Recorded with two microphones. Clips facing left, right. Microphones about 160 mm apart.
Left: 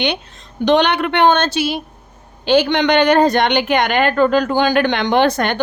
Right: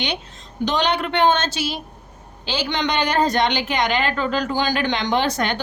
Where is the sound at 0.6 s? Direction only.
60° left (ahead or behind).